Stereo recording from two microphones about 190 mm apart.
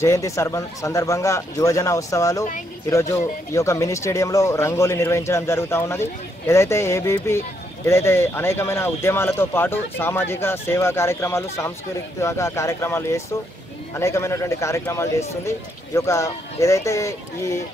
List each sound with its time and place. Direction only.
0.0 s speech: 15° left (ahead or behind)